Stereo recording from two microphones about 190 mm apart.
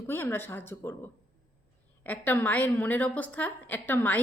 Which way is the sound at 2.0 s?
10° left (ahead or behind).